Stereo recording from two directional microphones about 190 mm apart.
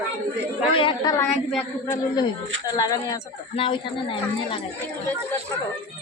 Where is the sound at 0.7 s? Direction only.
25° left (ahead or behind).